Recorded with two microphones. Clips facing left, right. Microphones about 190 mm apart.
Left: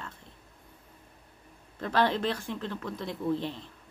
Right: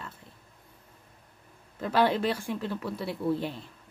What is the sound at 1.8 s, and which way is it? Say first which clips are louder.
Speech: right 2 dB; 5° right (ahead or behind).